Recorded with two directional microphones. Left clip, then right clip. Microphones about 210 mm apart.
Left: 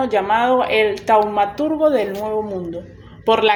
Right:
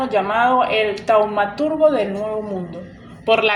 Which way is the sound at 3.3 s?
40° left (ahead or behind).